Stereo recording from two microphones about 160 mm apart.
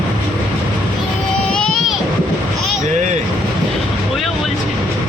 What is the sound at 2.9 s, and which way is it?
Vehicle, 50° right (ahead or behind).